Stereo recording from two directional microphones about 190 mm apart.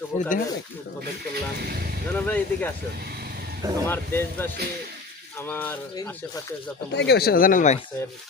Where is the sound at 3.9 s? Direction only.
10° left (ahead or behind).